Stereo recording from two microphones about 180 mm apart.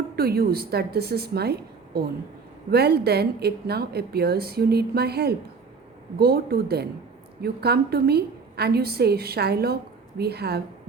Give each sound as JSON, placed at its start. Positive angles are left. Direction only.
{"t": 0.2, "sound": "a woman's voice", "side_deg": -60}